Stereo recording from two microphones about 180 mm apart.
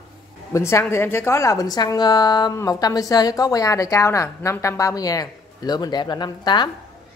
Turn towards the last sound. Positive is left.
turn(degrees=25)  # may be behind; listen again after turning